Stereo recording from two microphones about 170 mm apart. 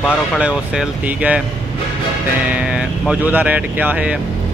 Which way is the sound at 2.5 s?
5° right (ahead or behind).